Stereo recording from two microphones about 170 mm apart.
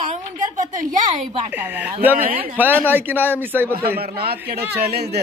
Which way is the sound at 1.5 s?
10° right (ahead or behind).